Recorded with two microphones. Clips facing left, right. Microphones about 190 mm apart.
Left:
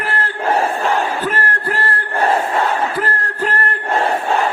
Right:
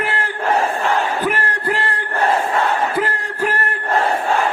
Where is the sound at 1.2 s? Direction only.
15° right (ahead or behind).